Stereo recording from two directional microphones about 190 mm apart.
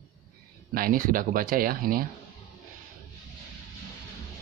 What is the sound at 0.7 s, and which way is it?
Speech, 50° right (ahead or behind).